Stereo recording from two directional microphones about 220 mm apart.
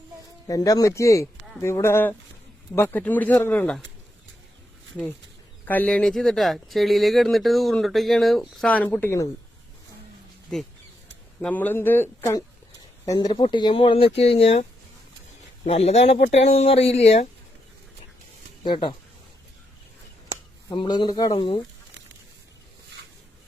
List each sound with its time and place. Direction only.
0.4 s speech: 15° left (ahead or behind)
5.6 s speech: 5° left (ahead or behind)
11.3 s speech: 5° left (ahead or behind); by 17.2 s 30° left (ahead or behind)
18.6 s speech: 25° left (ahead or behind)
20.7 s speech: 20° left (ahead or behind)